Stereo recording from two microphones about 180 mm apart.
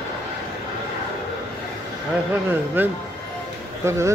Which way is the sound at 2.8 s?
10° right (ahead or behind).